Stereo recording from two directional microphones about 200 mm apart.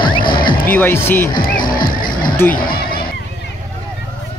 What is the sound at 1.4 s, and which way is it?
Music, 45° left (ahead or behind).